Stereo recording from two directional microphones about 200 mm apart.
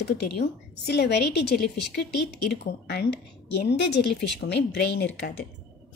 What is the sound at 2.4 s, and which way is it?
A woman's voice, 55° left (ahead or behind).